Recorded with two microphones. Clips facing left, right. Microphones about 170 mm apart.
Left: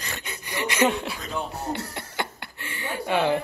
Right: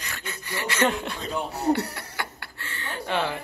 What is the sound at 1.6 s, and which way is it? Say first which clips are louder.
Speech: right 7 dB; 70° right (ahead or behind).